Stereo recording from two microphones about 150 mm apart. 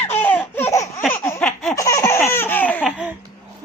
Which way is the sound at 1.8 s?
20° left (ahead or behind).